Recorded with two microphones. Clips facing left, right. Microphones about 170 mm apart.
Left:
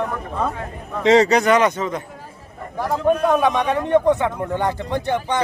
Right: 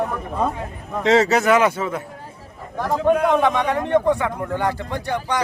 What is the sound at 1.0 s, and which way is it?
Speech, centre (ahead or behind).